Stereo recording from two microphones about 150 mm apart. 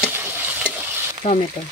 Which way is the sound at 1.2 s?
45° left (ahead or behind).